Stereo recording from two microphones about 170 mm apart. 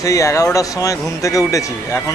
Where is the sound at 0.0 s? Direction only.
20° left (ahead or behind).